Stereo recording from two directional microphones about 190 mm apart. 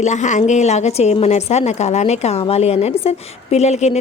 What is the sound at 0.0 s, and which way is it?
A woman's voice, 40° left (ahead or behind).